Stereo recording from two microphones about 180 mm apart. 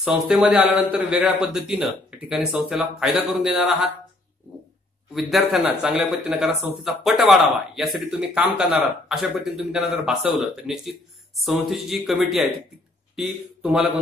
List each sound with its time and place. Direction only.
0.0 s speech: 5° right (ahead or behind)
5.1 s speech: centre (ahead or behind)